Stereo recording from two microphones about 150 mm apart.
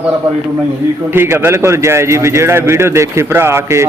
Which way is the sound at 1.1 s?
15° right (ahead or behind).